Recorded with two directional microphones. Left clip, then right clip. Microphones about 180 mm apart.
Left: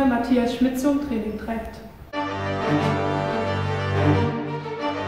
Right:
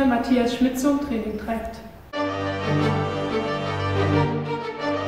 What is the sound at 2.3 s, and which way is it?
Music, centre (ahead or behind).